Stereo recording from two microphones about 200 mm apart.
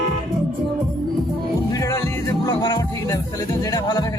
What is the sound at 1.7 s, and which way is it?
Music, 15° left (ahead or behind).